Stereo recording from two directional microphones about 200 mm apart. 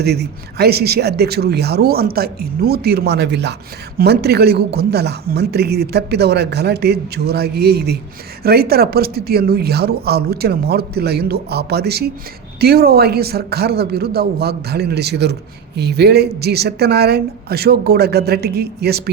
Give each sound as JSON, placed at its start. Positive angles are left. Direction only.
{"t": 0.0, "sound": "speech", "side_deg": -55}